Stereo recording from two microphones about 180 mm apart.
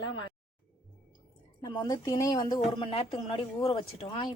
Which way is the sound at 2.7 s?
30° left (ahead or behind).